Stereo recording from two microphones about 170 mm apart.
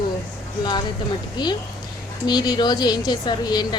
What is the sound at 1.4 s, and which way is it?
A woman's voice, 25° left (ahead or behind).